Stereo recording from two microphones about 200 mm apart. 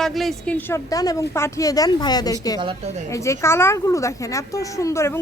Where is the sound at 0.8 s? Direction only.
20° left (ahead or behind).